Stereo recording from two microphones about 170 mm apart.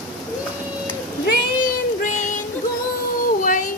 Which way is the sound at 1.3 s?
50° left (ahead or behind).